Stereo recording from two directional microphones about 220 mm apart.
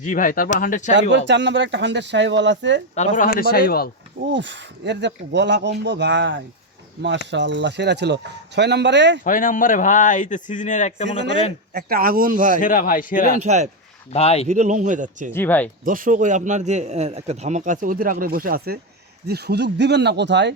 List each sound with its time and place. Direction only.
0.0 s speech: 35° left (ahead or behind)
1.1 s speech: 55° right (ahead or behind)
2.9 s speech: 35° left (ahead or behind)
4.3 s speech: 55° right (ahead or behind)
9.2 s speech: 35° left (ahead or behind)
11.7 s speech: 45° right (ahead or behind)
12.5 s speech: 40° left (ahead or behind)
13.3 s speech: 30° right (ahead or behind)
14.1 s speech: 30° left (ahead or behind)
14.4 s speech: 35° right (ahead or behind)
15.3 s speech: 10° left (ahead or behind)
15.8 s speech: 40° right (ahead or behind)